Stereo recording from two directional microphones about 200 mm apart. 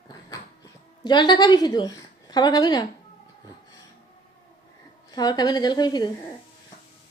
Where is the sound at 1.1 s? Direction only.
20° left (ahead or behind).